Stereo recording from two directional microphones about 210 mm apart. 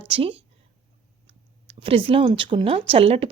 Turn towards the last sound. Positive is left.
turn(degrees=-25)  # may be behind; listen again after turning